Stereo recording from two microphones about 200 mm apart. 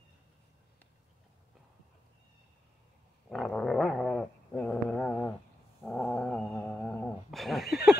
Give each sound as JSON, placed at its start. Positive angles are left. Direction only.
{"t": 3.3, "sound": "dog", "side_deg": 5}